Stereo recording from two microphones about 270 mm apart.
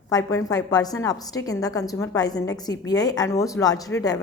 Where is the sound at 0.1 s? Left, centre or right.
Centre.